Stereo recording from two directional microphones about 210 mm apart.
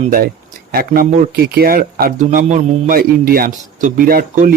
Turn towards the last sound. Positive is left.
turn(degrees=-40)  # may be behind; listen again after turning